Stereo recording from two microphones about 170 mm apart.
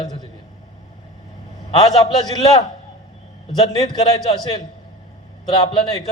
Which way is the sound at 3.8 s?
20° left (ahead or behind).